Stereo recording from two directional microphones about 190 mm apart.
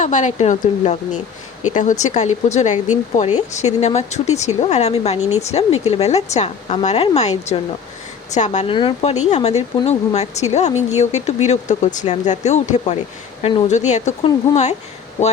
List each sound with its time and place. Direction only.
0.0 s speech: 40° left (ahead or behind)